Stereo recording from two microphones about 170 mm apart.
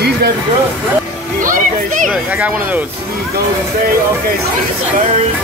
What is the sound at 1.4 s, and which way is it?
Music, 50° right (ahead or behind).